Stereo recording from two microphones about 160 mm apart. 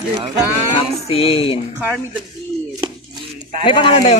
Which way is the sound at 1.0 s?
35° left (ahead or behind).